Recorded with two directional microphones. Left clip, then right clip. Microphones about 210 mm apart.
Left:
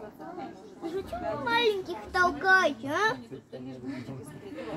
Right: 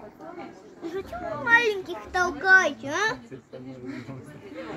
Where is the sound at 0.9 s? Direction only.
Centre (ahead or behind).